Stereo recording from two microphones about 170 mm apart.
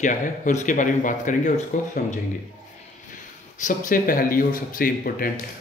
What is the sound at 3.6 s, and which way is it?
Speech, 50° left (ahead or behind).